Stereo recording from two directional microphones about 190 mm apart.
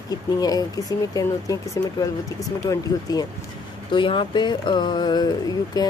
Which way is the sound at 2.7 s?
20° left (ahead or behind).